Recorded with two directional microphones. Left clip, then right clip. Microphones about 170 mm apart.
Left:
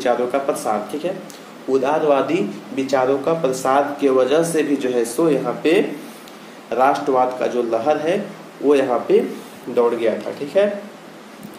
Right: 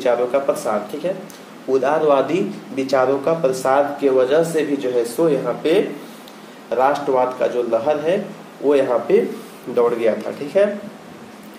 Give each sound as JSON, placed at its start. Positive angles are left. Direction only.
{"t": 0.0, "sound": "a man's voice", "side_deg": 10}
{"t": 1.7, "sound": "a man's voice", "side_deg": -5}
{"t": 6.8, "sound": "a man's voice", "side_deg": 10}
{"t": 9.8, "sound": "speech", "side_deg": -10}